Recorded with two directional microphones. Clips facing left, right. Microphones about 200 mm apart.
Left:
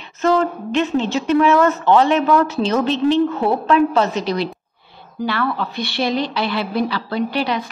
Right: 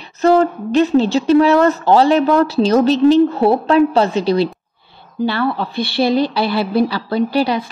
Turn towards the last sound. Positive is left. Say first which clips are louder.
# right 4 dB
turn(degrees=-35)  # may be behind; listen again after turning